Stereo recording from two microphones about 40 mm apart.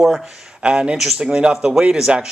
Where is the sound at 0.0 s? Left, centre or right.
Centre.